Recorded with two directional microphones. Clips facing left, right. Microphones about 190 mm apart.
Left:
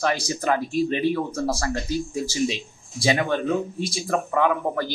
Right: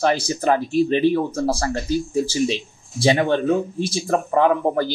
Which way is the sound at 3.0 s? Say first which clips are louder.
Right 5 dB; 30° right (ahead or behind).